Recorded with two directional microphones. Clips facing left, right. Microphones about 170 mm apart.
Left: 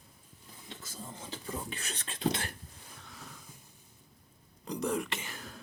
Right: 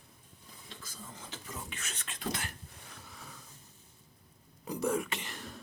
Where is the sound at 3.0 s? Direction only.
Centre (ahead or behind).